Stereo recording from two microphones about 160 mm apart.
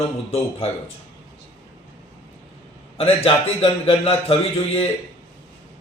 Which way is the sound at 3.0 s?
40° left (ahead or behind).